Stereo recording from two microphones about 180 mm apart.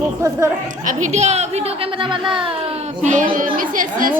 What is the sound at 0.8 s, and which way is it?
A woman's voice, 40° right (ahead or behind).